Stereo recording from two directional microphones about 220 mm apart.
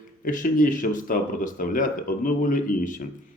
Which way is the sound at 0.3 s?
35° left (ahead or behind).